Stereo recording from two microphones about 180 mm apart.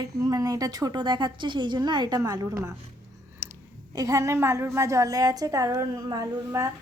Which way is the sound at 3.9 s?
20° right (ahead or behind).